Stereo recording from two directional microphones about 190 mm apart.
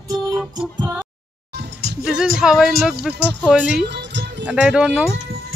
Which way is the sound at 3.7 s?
60° right (ahead or behind).